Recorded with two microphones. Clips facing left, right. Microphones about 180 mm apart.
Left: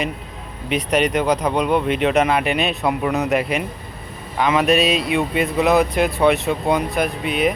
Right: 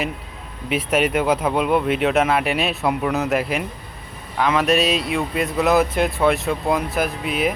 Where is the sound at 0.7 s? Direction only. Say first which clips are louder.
Left 1 dB; 5° right (ahead or behind).